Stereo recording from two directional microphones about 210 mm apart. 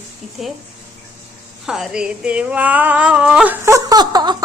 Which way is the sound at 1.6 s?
Centre (ahead or behind).